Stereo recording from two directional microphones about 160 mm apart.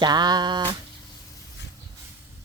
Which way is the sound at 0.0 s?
25° right (ahead or behind).